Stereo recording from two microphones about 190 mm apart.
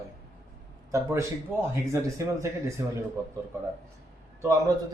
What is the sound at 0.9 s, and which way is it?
A man's voice, 15° right (ahead or behind).